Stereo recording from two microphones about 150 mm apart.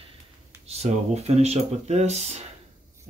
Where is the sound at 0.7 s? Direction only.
45° right (ahead or behind).